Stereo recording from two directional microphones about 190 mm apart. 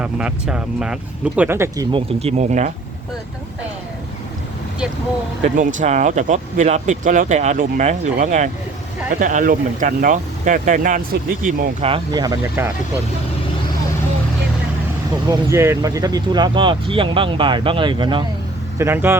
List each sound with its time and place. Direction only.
0.0 s speech: 5° right (ahead or behind)
1.9 s speech: 30° right (ahead or behind)
5.5 s speech: 40° right (ahead or behind)
11.8 s speech: 30° right (ahead or behind); by 12.7 s 10° right (ahead or behind)
15.3 s speech: 15° right (ahead or behind)
18.8 s speech: 10° right (ahead or behind)